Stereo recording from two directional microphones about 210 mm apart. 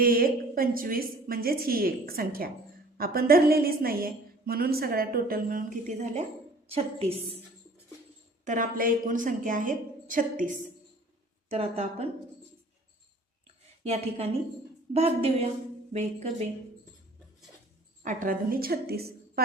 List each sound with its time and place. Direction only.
0.0 s a woman's voice: 45° right (ahead or behind)
8.4 s a woman's voice: 40° right (ahead or behind)
13.8 s a woman's voice: 30° right (ahead or behind)
18.0 s a woman's voice: 40° right (ahead or behind)